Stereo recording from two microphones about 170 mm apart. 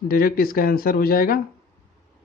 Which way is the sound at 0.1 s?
60° left (ahead or behind).